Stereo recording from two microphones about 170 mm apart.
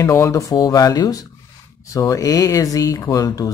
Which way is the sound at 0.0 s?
20° left (ahead or behind).